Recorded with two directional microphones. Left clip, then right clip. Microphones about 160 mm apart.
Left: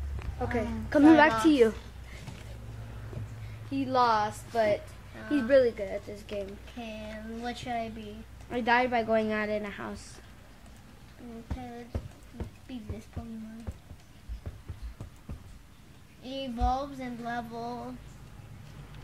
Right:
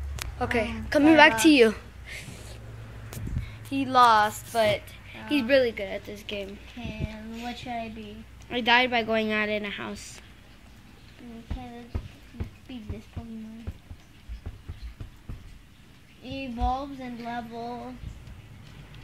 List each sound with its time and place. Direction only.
0.4 s a woman's voice: 10° right (ahead or behind)
0.8 s speech: 5° left (ahead or behind)
3.7 s a woman's voice: 10° right (ahead or behind)
5.2 s a woman's voice: 5° right (ahead or behind)
16.3 s speech: centre (ahead or behind)